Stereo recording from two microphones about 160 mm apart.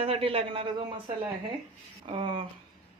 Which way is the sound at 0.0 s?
35° right (ahead or behind).